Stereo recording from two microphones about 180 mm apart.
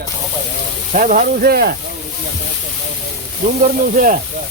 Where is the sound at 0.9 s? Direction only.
50° right (ahead or behind).